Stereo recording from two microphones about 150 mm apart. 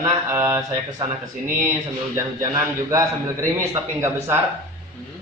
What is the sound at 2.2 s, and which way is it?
A man's voice, 20° right (ahead or behind).